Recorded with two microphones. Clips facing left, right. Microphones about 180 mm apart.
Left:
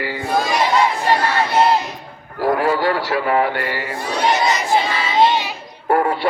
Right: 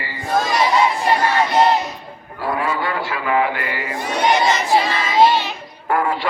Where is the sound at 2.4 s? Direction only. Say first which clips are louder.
Left 5 dB; 40° left (ahead or behind).